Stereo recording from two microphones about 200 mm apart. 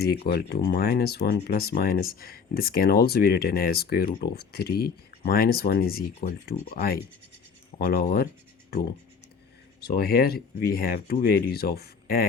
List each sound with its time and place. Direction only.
0.0 s speech: 50° left (ahead or behind)
9.8 s speech: 50° left (ahead or behind)